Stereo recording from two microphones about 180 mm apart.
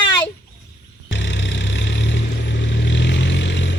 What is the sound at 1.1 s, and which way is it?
Vehicle, 90° left.